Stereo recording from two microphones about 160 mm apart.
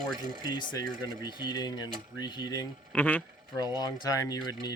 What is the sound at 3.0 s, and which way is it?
Speech, 10° left (ahead or behind).